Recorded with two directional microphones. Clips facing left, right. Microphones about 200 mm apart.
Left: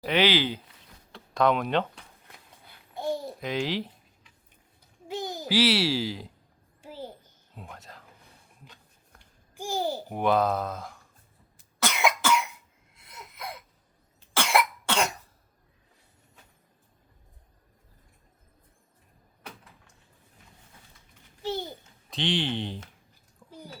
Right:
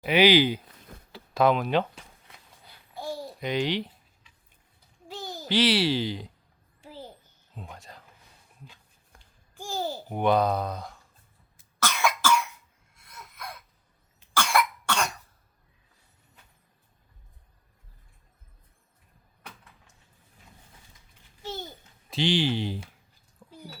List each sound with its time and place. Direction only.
0.0 s speech: 10° right (ahead or behind)
1.1 s a sound: 5° right (ahead or behind)
2.9 s babbling: 20° left (ahead or behind)
3.4 s speech: centre (ahead or behind)
5.0 s a sound: 15° left (ahead or behind)
5.5 s speech: 5° left (ahead or behind)
7.5 s speech: centre (ahead or behind)
9.6 s babbling: 15° left (ahead or behind)
10.1 s speech: centre (ahead or behind)
11.8 s cough: 20° left (ahead or behind)
13.0 s a sound: 20° left (ahead or behind)
14.3 s cough: 20° left (ahead or behind)
22.1 s speech: centre (ahead or behind)